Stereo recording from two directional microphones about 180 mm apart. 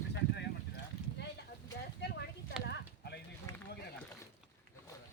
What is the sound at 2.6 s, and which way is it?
Clip-clop, 65° left (ahead or behind).